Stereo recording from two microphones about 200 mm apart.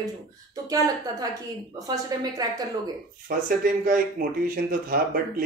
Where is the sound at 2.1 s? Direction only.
20° right (ahead or behind).